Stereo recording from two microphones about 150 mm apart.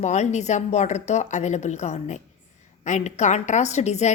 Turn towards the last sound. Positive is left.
turn(degrees=50)  # may be behind; listen again after turning